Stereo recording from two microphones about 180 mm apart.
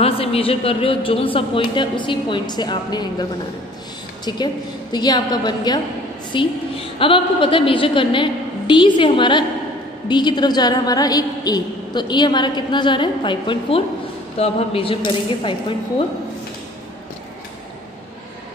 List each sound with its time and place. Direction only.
0.0 s a woman's voice: 35° left (ahead or behind)